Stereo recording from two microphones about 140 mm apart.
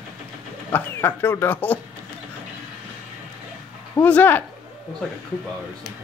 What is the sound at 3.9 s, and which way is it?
Speech, 10° left (ahead or behind).